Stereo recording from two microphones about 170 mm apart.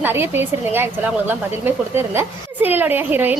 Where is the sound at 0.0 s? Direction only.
15° right (ahead or behind).